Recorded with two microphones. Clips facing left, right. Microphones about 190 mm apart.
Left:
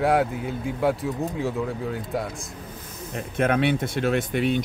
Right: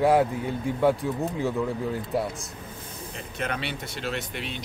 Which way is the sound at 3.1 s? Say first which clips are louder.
Left 9 dB; 55° left (ahead or behind).